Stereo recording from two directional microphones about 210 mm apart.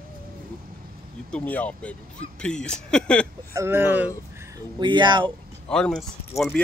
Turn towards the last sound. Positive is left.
turn(degrees=0)  # may be behind; listen again after turning